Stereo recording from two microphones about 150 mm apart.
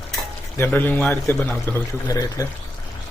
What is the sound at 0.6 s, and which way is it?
Speech, 15° left (ahead or behind).